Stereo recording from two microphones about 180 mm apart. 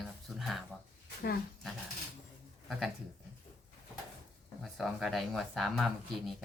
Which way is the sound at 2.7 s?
Centre (ahead or behind).